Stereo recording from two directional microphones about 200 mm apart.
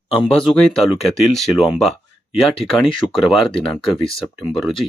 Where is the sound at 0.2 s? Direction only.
Centre (ahead or behind).